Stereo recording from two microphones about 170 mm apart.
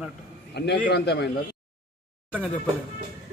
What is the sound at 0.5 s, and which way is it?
Speech, 80° left.